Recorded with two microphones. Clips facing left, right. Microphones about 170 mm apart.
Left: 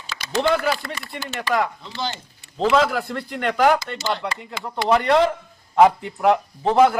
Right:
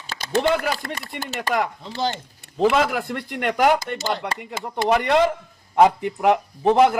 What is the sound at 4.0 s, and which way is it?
Speech, 45° right (ahead or behind).